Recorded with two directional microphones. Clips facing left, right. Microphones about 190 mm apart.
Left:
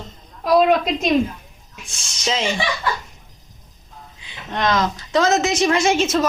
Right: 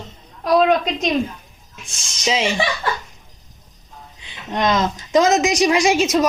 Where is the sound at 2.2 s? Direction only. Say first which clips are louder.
Right 3 dB; 10° right (ahead or behind).